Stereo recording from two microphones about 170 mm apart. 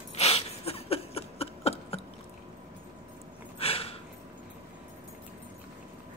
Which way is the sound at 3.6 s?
35° left (ahead or behind).